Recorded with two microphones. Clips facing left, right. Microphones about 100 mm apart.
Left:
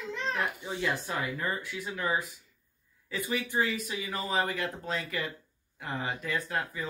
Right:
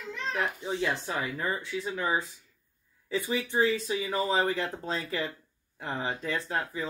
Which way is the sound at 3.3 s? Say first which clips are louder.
Right 3 dB; 25° right (ahead or behind).